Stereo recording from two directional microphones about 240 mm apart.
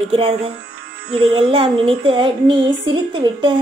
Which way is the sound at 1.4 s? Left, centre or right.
Right.